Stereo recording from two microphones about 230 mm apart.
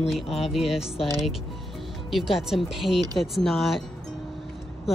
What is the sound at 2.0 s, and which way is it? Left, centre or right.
Speech, centre.